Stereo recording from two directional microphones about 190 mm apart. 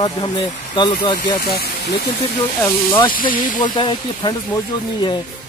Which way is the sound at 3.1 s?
45° left (ahead or behind).